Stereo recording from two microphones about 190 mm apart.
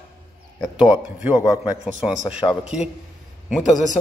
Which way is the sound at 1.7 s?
5° right (ahead or behind).